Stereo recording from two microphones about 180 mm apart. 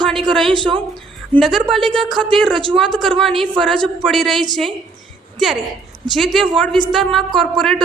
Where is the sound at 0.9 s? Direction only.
Centre (ahead or behind).